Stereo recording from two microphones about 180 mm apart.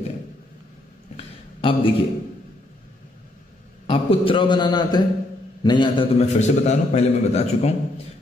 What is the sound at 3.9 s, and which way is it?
A man's voice, 30° left (ahead or behind).